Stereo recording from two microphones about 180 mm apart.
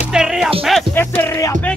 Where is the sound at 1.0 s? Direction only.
10° left (ahead or behind).